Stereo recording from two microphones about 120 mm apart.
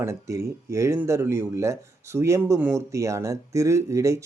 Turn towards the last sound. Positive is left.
turn(degrees=-25)  # may be behind; listen again after turning